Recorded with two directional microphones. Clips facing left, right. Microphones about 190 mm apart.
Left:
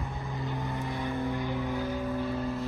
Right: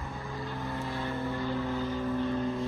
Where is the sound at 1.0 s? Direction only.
15° left (ahead or behind).